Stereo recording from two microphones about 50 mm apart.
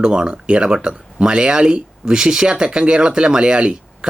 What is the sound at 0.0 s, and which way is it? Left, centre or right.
Speech, centre.